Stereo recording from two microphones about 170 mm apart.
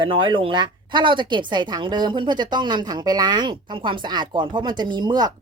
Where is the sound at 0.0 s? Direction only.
30° right (ahead or behind).